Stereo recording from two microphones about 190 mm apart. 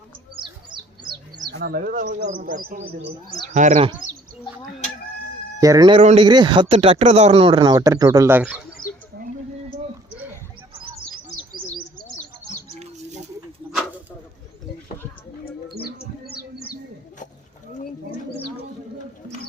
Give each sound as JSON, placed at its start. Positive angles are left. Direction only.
{"t": 0.3, "sound": "bird", "side_deg": -25}
{"t": 1.5, "sound": "speech", "side_deg": -55}
{"t": 5.5, "sound": "speech", "side_deg": -20}
{"t": 8.8, "sound": "bird", "side_deg": 45}
{"t": 12.8, "sound": "rodents", "side_deg": -40}
{"t": 13.7, "sound": "a sound", "side_deg": -10}